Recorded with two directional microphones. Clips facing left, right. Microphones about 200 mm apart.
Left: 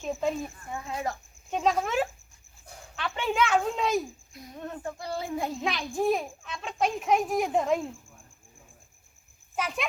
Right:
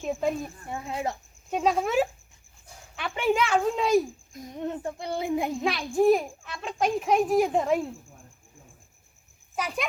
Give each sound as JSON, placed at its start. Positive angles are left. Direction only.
{"t": 0.0, "sound": "speech", "side_deg": -10}
{"t": 0.7, "sound": "speech", "side_deg": -25}
{"t": 1.5, "sound": "a child's voice", "side_deg": 0}
{"t": 4.5, "sound": "speech", "side_deg": -20}
{"t": 5.5, "sound": "a child's voice", "side_deg": 0}
{"t": 9.6, "sound": "speech", "side_deg": 0}